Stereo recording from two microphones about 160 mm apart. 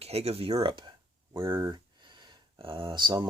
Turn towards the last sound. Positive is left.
turn(degrees=-30)  # may be behind; listen again after turning